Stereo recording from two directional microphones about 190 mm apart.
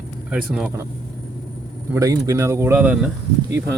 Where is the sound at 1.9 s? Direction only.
15° right (ahead or behind).